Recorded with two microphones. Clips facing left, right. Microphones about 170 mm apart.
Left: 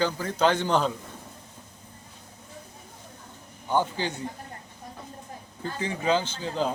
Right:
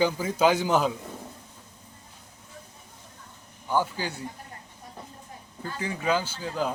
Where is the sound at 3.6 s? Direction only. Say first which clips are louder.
Left 1 dB; 20° left (ahead or behind).